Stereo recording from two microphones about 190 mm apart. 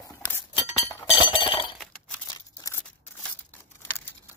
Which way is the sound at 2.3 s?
15° left (ahead or behind).